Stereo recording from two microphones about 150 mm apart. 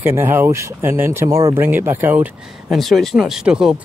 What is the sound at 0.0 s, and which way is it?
Speech, 15° right (ahead or behind).